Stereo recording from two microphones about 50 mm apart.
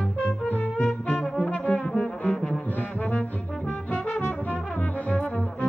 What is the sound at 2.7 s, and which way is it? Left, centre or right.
Brass instrument, left.